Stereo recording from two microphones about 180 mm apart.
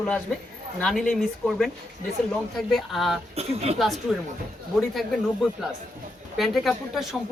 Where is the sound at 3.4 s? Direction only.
35° right (ahead or behind).